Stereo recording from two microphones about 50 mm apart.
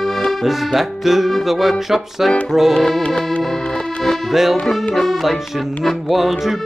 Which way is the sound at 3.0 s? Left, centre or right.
Left.